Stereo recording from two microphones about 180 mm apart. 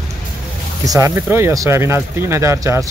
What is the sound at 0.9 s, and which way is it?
Speech, 15° right (ahead or behind).